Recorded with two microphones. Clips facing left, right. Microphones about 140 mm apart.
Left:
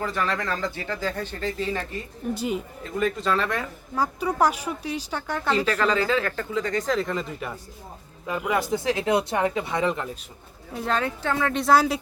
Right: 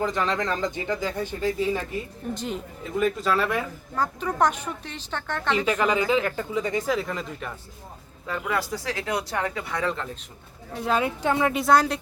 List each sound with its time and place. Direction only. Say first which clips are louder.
0.0 s speech: right 2 dB; 20° right (ahead or behind)
2.3 s speech: left 4 dB; 10° left (ahead or behind)
2.9 s speech: right 1 dB; 5° right (ahead or behind)
3.9 s speech: left 1 dB; 10° left (ahead or behind)
5.5 s speech: even; 15° right (ahead or behind); by 7.5 s 5° left (ahead or behind)
8.3 s speech: left 3 dB; 15° left (ahead or behind)
10.8 s speech: right 1 dB; 5° right (ahead or behind)
11.5 s speech: left 4 dB; centre (ahead or behind)